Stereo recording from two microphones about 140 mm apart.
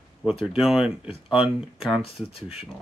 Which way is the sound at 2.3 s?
40° left (ahead or behind).